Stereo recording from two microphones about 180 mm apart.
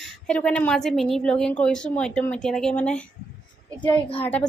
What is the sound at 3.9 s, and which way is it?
Speech, 30° left (ahead or behind).